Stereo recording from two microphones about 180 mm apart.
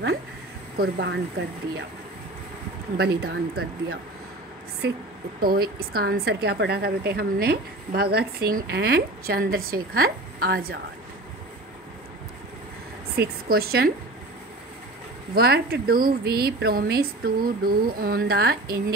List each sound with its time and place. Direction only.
0.7 s speech: 70° right (ahead or behind)
3.0 s a woman's voice: 65° right (ahead or behind)
5.4 s a woman's voice: 55° right (ahead or behind)
13.1 s a woman's voice: 60° right (ahead or behind)
15.3 s a woman's voice: 60° right (ahead or behind)